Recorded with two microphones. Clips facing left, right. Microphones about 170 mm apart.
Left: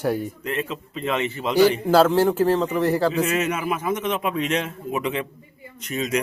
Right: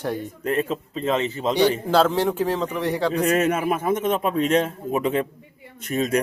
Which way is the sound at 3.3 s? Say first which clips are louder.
Right 3 dB; 50° right (ahead or behind).